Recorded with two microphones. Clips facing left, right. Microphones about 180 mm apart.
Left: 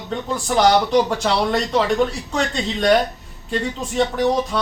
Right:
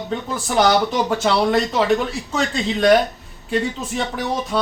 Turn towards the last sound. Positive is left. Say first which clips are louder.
# left 5 dB
turn(degrees=0)  # may be behind; listen again after turning